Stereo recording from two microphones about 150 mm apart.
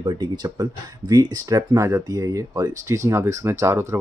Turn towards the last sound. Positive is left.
turn(degrees=-20)  # may be behind; listen again after turning